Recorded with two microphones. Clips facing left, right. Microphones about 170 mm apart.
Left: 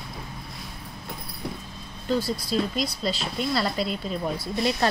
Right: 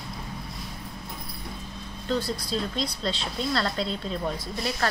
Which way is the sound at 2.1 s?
5° left (ahead or behind).